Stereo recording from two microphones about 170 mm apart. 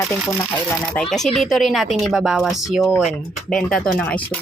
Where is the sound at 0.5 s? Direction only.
5° left (ahead or behind).